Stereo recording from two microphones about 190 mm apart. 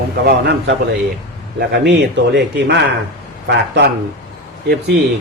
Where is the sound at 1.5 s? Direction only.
60° right (ahead or behind).